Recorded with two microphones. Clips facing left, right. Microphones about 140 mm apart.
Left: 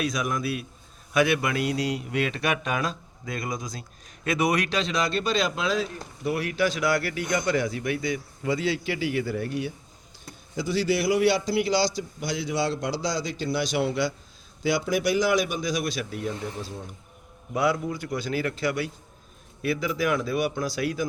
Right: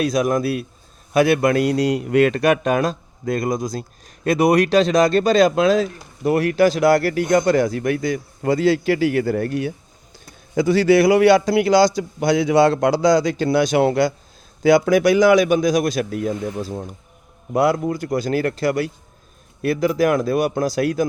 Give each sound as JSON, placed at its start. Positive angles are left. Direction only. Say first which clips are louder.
{"t": 0.0, "sound": "a man's voice", "louder": "right 9 dB", "side_deg": -35}
{"t": 17.9, "sound": "a man's voice", "louder": "right 8 dB", "side_deg": -40}